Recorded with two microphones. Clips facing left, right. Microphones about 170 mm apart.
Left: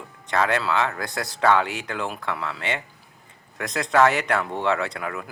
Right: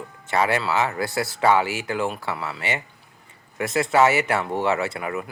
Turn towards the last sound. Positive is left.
turn(degrees=-5)  # may be behind; listen again after turning